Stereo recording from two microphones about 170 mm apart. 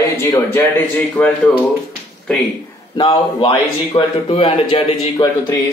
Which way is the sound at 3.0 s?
30° left (ahead or behind).